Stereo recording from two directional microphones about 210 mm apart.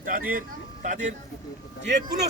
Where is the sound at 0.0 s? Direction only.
40° right (ahead or behind).